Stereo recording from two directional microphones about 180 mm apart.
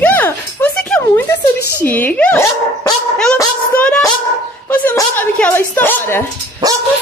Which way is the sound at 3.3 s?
10° left (ahead or behind).